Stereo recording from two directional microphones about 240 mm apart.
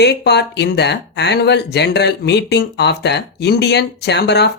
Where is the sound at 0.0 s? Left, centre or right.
Left.